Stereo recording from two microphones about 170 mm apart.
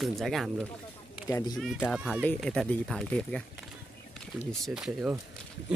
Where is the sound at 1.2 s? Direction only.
20° left (ahead or behind).